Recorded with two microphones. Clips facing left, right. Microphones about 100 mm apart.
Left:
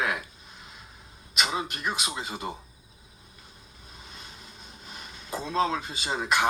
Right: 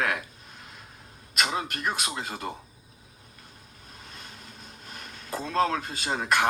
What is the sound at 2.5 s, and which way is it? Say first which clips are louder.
Speech: even; 10° left (ahead or behind).